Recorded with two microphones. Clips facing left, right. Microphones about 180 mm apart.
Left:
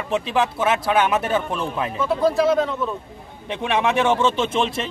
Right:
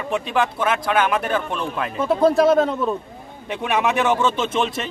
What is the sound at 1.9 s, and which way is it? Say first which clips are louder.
Speech: right 3 dB; 45° right (ahead or behind).